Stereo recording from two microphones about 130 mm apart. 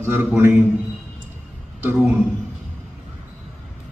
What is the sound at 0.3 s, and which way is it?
Speech, 20° right (ahead or behind).